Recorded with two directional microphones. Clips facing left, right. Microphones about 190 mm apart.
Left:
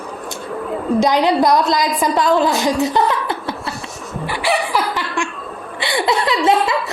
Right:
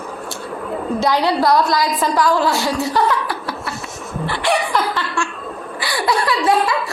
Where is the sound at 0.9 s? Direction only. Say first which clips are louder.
Left 3 dB; 20° left (ahead or behind).